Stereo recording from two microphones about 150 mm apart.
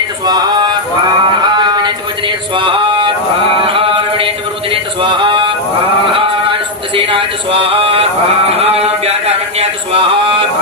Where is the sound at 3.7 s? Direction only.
35° right (ahead or behind).